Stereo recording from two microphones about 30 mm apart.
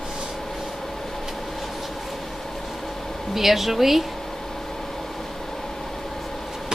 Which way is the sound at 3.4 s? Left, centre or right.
Centre.